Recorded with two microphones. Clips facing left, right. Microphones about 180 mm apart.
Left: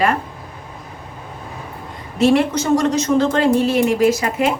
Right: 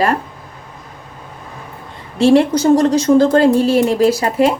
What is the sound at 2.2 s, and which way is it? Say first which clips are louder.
Speech: right 4 dB; 30° right (ahead or behind).